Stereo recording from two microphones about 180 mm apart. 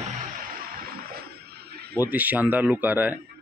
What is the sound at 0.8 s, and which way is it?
Music, 55° right (ahead or behind).